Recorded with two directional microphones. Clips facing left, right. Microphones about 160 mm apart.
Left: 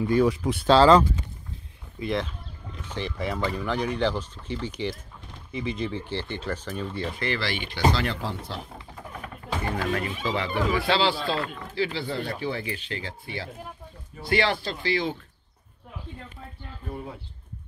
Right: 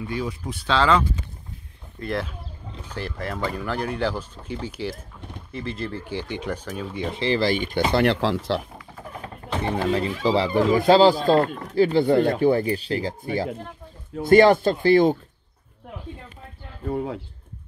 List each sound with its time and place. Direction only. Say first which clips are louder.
0.3 s speech: left 6 dB; 80° left
0.7 s speech: left 4 dB; 35° left (ahead or behind)
2.0 s speech: even; centre (ahead or behind)
7.1 s speech: right 8 dB; 25° right (ahead or behind)
7.3 s speech: right 9 dB; 45° right (ahead or behind); by 8.6 s 85° right
9.6 s speech: right 5 dB; 25° right (ahead or behind)
10.2 s speech: right 8 dB; 35° right (ahead or behind)
16.8 s speech: right 10 dB; 90° right